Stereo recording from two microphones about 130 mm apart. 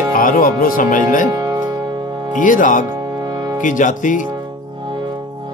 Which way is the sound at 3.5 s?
80° left.